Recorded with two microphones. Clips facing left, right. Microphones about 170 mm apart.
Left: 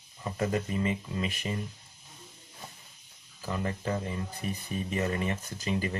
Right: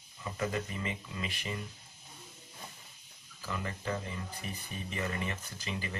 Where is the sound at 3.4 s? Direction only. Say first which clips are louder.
Left 6 dB; 35° left (ahead or behind).